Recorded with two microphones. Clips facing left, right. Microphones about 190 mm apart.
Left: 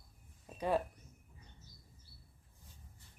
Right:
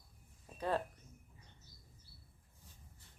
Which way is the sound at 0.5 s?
15° left (ahead or behind).